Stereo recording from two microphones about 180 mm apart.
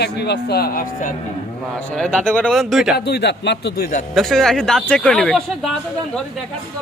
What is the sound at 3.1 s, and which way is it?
Speech, 70° left (ahead or behind).